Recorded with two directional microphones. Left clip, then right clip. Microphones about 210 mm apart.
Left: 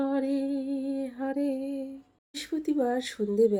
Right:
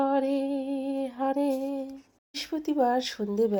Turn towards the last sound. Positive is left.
turn(degrees=0)  # may be behind; listen again after turning